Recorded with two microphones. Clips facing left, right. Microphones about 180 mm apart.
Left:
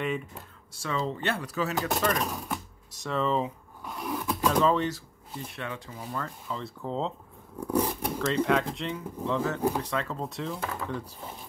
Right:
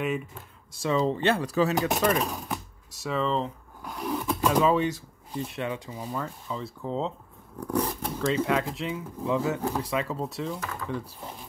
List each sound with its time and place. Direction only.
0.8 s speech: 20° right (ahead or behind)
1.4 s chopping: 30° right (ahead or behind)
1.8 s speech: 15° right (ahead or behind)
2.1 s speech: centre (ahead or behind)
6.0 s speech: 5° right (ahead or behind)
8.3 s speech: 5° right (ahead or behind)